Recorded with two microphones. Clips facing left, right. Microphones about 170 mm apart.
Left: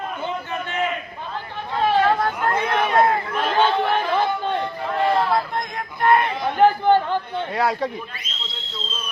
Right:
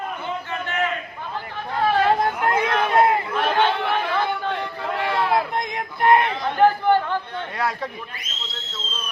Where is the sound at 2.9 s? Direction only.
10° right (ahead or behind).